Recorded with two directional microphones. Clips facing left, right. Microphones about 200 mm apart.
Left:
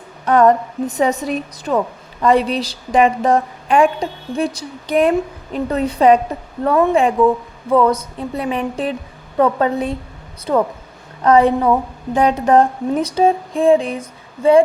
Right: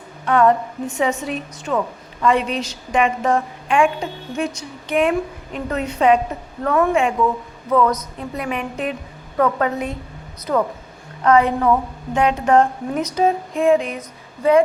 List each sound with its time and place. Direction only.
0.3 s a woman's voice: 40° left (ahead or behind)